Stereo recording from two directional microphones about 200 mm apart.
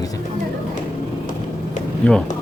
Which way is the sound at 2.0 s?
5° left (ahead or behind).